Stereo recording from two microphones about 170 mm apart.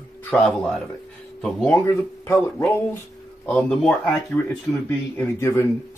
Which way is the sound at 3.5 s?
Centre (ahead or behind).